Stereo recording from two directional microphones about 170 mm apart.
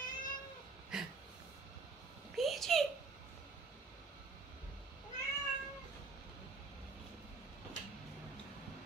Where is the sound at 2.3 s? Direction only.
Centre (ahead or behind).